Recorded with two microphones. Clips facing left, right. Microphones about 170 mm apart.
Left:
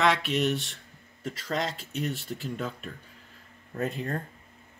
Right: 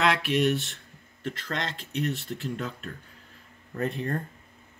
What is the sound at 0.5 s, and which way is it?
Speech, centre (ahead or behind).